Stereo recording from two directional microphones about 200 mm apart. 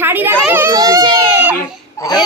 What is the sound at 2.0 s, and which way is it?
Speech, 20° left (ahead or behind).